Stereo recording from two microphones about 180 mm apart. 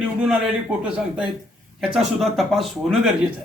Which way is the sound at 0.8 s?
5° right (ahead or behind).